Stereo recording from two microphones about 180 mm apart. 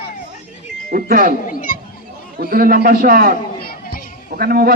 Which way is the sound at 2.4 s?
55° right (ahead or behind).